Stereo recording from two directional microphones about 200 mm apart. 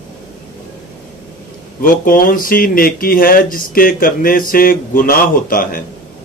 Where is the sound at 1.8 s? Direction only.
45° left (ahead or behind).